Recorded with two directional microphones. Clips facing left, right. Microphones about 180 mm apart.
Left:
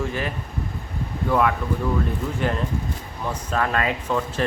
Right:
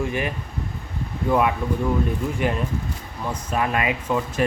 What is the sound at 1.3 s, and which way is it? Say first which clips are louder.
Speech: right 1 dB; 20° right (ahead or behind).